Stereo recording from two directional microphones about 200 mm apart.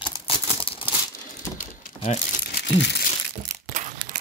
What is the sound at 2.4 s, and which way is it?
Crumpling, 55° left (ahead or behind).